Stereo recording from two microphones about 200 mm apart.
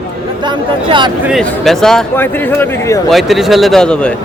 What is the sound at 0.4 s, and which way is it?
Speech, 25° right (ahead or behind).